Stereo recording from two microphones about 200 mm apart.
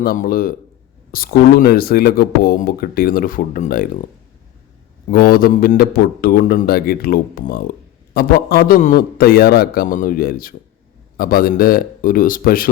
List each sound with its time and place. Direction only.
0.0 s speech: 50° left (ahead or behind)
5.1 s speech: 50° left (ahead or behind)